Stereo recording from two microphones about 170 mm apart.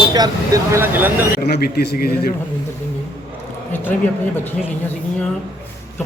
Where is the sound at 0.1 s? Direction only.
20° right (ahead or behind).